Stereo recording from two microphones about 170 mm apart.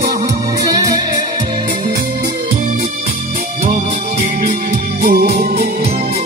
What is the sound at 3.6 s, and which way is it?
Music, 60° right (ahead or behind).